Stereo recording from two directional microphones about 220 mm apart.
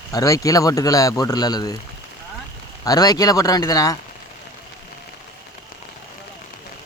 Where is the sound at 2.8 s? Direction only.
15° left (ahead or behind).